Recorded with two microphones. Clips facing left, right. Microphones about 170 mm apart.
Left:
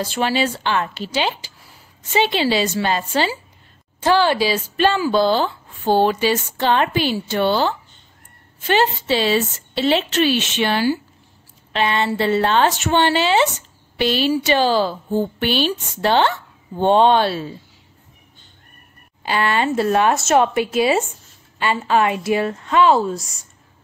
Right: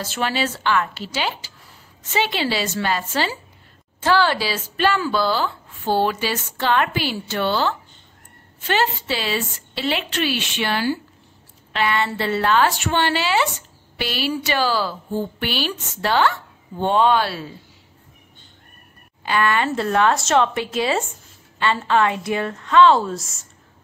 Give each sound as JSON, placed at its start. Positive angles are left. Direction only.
{"t": 0.0, "sound": "speech", "side_deg": 20}
{"t": 19.2, "sound": "speech", "side_deg": 20}
{"t": 22.9, "sound": "a woman's voice", "side_deg": 0}